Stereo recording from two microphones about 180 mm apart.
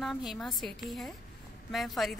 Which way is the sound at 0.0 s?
Centre (ahead or behind).